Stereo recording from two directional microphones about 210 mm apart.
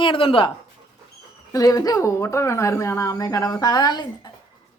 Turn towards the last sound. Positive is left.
turn(degrees=20)  # may be behind; listen again after turning